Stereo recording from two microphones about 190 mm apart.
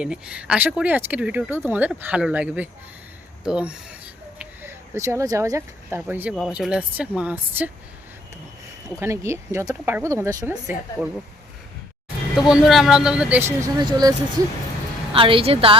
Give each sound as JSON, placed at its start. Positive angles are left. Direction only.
{"t": 0.0, "sound": "speech", "side_deg": -5}
{"t": 9.0, "sound": "speech", "side_deg": -15}
{"t": 12.5, "sound": "a woman's voice", "side_deg": 0}